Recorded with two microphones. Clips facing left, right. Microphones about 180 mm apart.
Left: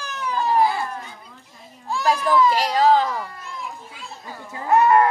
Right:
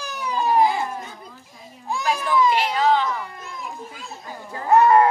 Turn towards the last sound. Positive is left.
turn(degrees=-20)  # may be behind; listen again after turning